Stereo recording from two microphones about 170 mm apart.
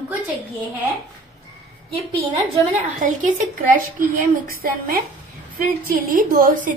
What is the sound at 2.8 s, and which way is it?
A woman's voice, 50° right (ahead or behind).